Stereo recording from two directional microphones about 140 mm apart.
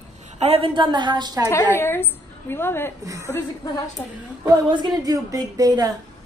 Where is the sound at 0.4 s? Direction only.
45° right (ahead or behind).